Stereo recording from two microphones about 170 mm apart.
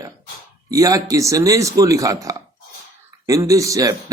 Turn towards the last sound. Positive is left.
turn(degrees=-20)  # may be behind; listen again after turning